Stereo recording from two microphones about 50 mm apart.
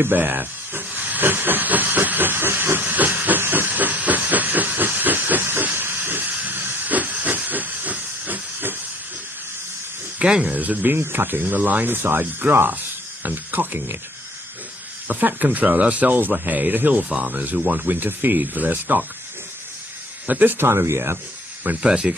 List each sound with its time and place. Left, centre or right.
0.0 s hiss: right
2.8 s hiss: right
10.2 s speech: centre
10.5 s hiss: right
11.0 s speech: right
15.0 s hiss: right
15.7 s speech: right
16.4 s hiss: right
20.2 s hiss: right
20.6 s speech: right
21.7 s speech: centre